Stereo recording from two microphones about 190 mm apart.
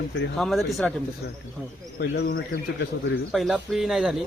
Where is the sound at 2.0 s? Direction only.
55° left (ahead or behind).